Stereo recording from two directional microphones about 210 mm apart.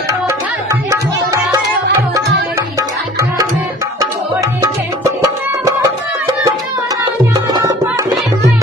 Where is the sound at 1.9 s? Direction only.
15° right (ahead or behind).